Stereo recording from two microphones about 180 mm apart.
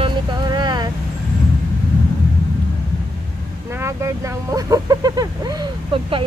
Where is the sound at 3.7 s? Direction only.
15° right (ahead or behind).